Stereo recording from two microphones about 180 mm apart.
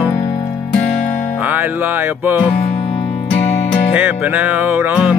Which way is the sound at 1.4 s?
10° right (ahead or behind).